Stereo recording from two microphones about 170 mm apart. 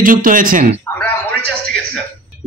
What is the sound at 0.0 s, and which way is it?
Speech, 55° right (ahead or behind).